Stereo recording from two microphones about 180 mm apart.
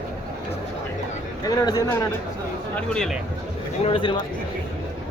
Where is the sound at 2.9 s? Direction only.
5° left (ahead or behind).